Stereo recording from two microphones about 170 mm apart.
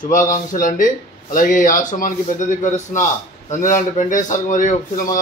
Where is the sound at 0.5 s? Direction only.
50° left (ahead or behind).